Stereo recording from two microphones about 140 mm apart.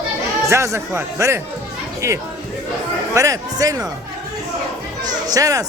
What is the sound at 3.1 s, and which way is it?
Speech, 25° right (ahead or behind).